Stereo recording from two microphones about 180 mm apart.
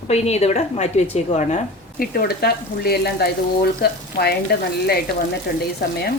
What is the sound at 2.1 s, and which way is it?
Speech, 60° left (ahead or behind).